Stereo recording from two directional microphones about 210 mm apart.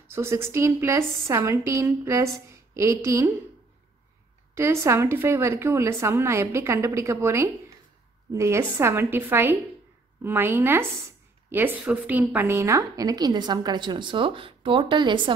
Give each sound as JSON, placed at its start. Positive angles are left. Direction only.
{"t": 0.1, "sound": "a woman's voice", "side_deg": -10}
{"t": 4.6, "sound": "a woman's voice", "side_deg": -10}